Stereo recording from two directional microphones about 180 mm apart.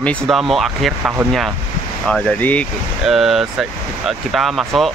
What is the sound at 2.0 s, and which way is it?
Speech, 5° left (ahead or behind).